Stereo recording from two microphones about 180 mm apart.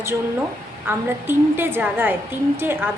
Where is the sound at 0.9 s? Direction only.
10° right (ahead or behind).